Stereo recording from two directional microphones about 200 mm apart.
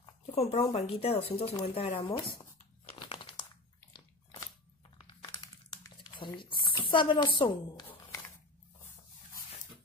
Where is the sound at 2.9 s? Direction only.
30° left (ahead or behind).